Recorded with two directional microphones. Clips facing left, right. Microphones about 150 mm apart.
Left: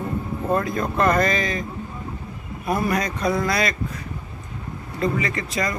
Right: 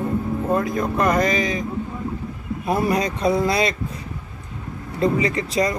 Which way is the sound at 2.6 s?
30° right (ahead or behind).